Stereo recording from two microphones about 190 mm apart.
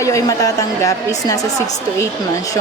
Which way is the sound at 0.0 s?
15° left (ahead or behind).